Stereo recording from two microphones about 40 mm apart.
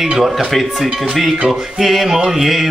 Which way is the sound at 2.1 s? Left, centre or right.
Centre.